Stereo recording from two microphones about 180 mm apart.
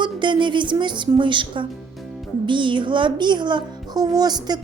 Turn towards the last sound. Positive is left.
turn(degrees=-20)  # may be behind; listen again after turning